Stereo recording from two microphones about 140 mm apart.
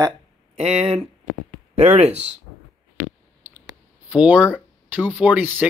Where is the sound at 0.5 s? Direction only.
50° right (ahead or behind).